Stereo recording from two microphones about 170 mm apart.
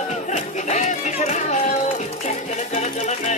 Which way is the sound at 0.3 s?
45° left (ahead or behind).